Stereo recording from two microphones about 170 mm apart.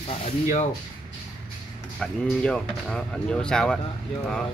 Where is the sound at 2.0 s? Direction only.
5° left (ahead or behind).